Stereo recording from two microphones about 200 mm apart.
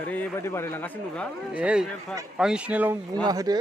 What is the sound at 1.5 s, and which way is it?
A man's voice, 5° right (ahead or behind).